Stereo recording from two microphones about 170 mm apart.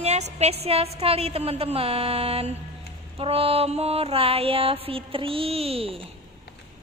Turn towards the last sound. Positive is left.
turn(degrees=-35)  # may be behind; listen again after turning